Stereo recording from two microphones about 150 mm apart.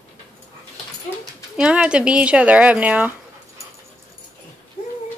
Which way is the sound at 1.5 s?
5° right (ahead or behind).